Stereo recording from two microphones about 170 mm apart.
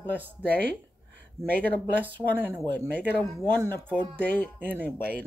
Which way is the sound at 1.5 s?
10° left (ahead or behind).